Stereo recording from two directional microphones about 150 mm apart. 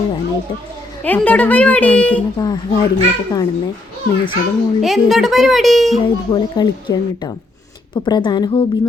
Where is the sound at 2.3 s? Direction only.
25° left (ahead or behind).